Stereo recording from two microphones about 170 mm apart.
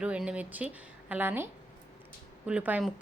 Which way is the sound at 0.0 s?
5° right (ahead or behind).